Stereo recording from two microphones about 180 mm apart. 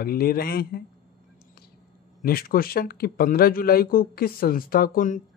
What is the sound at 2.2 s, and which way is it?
Speech, 55° left (ahead or behind).